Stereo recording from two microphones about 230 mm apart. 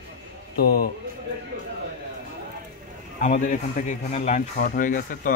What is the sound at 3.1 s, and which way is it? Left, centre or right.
Speech, left.